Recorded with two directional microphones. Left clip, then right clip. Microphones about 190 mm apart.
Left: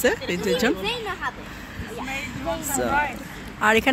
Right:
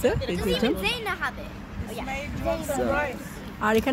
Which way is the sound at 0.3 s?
Centre (ahead or behind).